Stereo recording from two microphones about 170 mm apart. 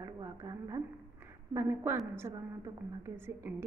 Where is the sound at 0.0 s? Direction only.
20° right (ahead or behind).